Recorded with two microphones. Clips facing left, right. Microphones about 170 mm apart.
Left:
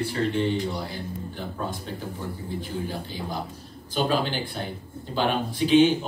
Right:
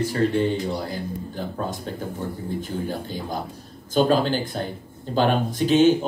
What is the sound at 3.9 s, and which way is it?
Speech, 45° right (ahead or behind).